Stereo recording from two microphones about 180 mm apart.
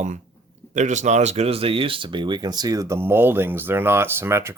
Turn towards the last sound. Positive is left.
turn(degrees=-15)  # may be behind; listen again after turning